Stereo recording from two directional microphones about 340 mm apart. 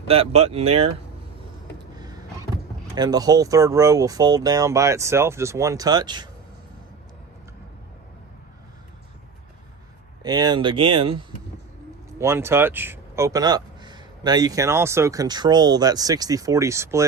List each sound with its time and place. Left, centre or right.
0.1 s speech: centre
2.0 s vehicle: centre
2.9 s speech: centre
10.2 s speech: centre